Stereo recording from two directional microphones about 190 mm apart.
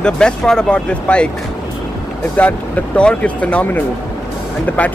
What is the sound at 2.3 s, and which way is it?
Speech, 5° left (ahead or behind).